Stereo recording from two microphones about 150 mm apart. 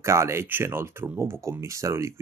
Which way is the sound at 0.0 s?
20° right (ahead or behind).